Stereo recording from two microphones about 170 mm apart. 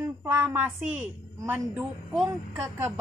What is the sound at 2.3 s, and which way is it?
Speech, 15° right (ahead or behind).